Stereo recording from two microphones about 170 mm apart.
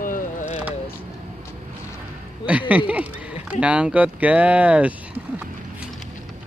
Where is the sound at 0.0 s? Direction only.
50° left (ahead or behind).